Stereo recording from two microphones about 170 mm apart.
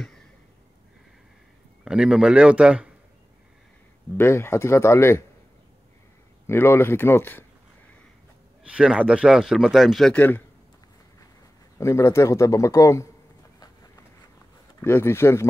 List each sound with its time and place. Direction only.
1.9 s a man's voice: 5° right (ahead or behind)
4.2 s a man's voice: 15° left (ahead or behind)
6.4 s a man's voice: 15° left (ahead or behind)
8.6 s a man's voice: 5° right (ahead or behind); by 10.4 s 10° left (ahead or behind)
11.8 s a man's voice: 15° left (ahead or behind)
14.8 s a man's voice: 15° left (ahead or behind)